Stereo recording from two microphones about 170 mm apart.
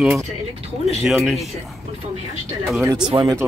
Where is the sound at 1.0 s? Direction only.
Centre (ahead or behind).